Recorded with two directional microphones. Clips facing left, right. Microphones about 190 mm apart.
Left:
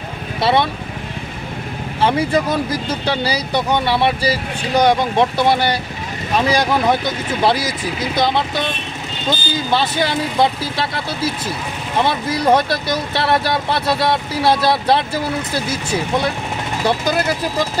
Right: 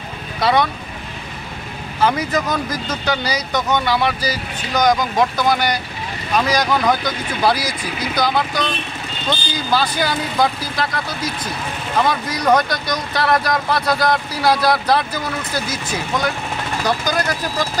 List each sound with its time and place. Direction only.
0.4 s speech: 25° left (ahead or behind)
2.0 s speech: 30° left (ahead or behind)